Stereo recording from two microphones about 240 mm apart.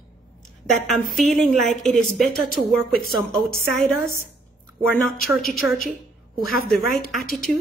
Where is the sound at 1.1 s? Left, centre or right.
Centre.